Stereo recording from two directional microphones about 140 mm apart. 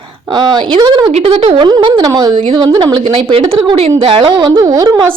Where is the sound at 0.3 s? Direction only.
30° right (ahead or behind).